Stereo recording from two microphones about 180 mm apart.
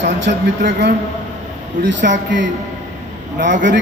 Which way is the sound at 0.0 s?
80° right.